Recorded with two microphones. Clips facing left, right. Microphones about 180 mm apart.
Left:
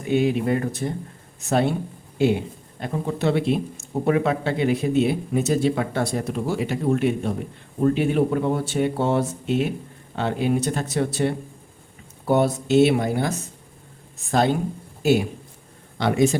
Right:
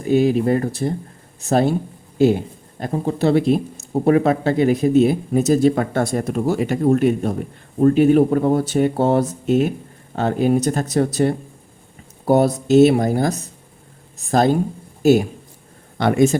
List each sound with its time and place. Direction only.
0.0 s speech: 40° right (ahead or behind)